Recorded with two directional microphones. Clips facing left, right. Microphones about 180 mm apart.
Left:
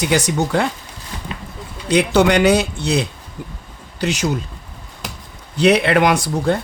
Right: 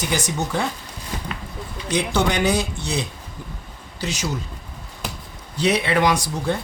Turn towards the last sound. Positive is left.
turn(degrees=60)  # may be behind; listen again after turning